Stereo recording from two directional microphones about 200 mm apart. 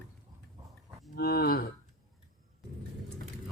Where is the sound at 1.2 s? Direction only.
50° left (ahead or behind).